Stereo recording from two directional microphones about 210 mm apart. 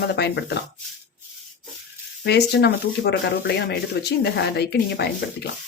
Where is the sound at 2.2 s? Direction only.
50° left (ahead or behind).